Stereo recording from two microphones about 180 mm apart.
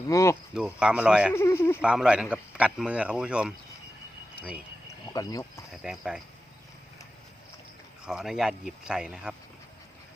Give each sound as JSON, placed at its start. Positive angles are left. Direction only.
{"t": 0.1, "sound": "speech", "side_deg": 15}
{"t": 0.5, "sound": "a man's voice", "side_deg": -5}
{"t": 1.3, "sound": "speech", "side_deg": 15}
{"t": 1.8, "sound": "a man's voice", "side_deg": -5}
{"t": 4.4, "sound": "a sound", "side_deg": -5}
{"t": 5.0, "sound": "speech", "side_deg": 20}
{"t": 5.7, "sound": "a man's voice", "side_deg": -5}
{"t": 8.0, "sound": "a man's voice", "side_deg": -5}